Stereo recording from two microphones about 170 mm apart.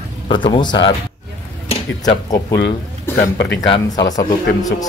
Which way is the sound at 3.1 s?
80° left.